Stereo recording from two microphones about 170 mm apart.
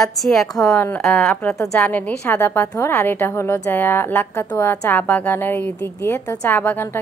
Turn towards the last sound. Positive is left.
turn(degrees=10)  # may be behind; listen again after turning